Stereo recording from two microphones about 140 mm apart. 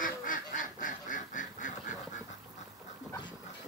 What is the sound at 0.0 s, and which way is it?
Duck, 70° left (ahead or behind).